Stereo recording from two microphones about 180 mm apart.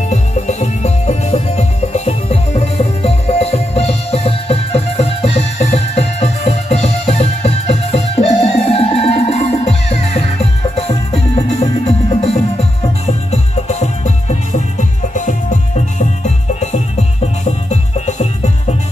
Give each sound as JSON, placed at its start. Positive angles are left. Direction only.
{"t": 0.1, "sound": "music", "side_deg": 40}